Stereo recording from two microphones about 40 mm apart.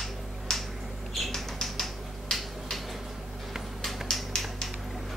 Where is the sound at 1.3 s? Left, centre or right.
Centre.